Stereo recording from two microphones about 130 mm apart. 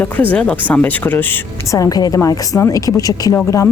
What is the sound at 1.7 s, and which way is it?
A woman's voice, 25° left (ahead or behind).